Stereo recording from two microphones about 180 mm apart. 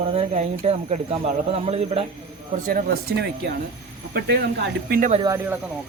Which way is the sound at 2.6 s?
55° right (ahead or behind).